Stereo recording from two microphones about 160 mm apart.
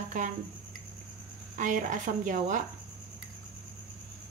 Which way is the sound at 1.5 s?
55° right (ahead or behind).